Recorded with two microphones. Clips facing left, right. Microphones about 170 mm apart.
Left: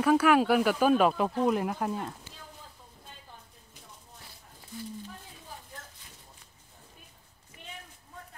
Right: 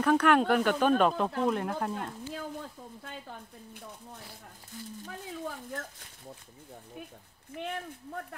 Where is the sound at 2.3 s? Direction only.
65° right (ahead or behind).